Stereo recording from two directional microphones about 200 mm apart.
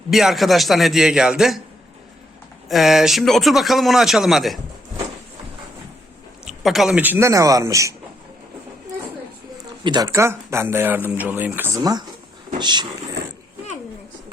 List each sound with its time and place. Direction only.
0.1 s a man's voice: centre (ahead or behind)
2.6 s a man's voice: centre (ahead or behind)
6.4 s speech: centre (ahead or behind)
9.8 s speech: 20° right (ahead or behind)